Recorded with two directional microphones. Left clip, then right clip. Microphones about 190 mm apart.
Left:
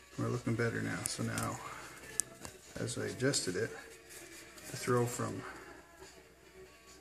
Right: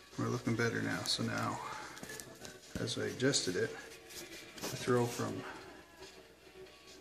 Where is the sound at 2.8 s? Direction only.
Centre (ahead or behind).